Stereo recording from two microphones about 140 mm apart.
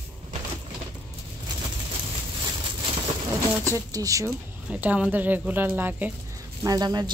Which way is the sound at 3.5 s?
20° right (ahead or behind).